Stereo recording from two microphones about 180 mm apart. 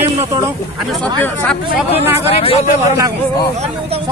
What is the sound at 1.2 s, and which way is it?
Speech, 5° left (ahead or behind).